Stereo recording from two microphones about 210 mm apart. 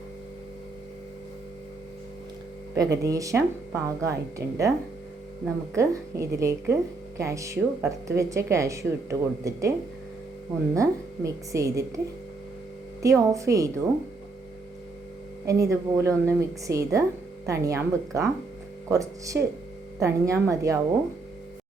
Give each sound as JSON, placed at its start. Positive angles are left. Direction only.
{"t": 2.7, "sound": "a woman's voice", "side_deg": -15}
{"t": 5.7, "sound": "a woman's voice", "side_deg": -15}
{"t": 10.8, "sound": "a woman's voice", "side_deg": -15}
{"t": 13.0, "sound": "a woman's voice", "side_deg": -15}
{"t": 15.4, "sound": "a woman's voice", "side_deg": -15}